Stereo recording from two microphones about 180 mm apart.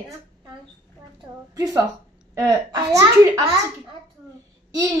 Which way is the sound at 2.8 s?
15° right (ahead or behind).